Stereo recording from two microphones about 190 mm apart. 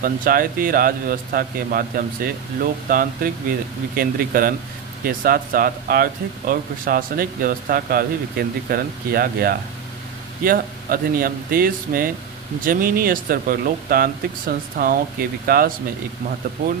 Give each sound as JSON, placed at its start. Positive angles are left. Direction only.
{"t": 0.0, "sound": "speech", "side_deg": -50}